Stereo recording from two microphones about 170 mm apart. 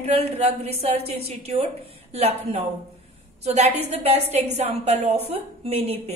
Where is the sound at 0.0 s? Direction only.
40° right (ahead or behind).